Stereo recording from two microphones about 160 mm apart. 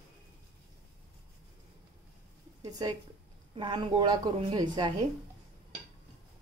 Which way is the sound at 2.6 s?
25° right (ahead or behind).